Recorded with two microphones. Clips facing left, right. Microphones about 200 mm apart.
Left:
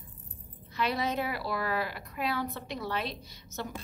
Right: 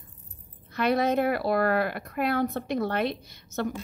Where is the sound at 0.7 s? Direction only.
55° right (ahead or behind).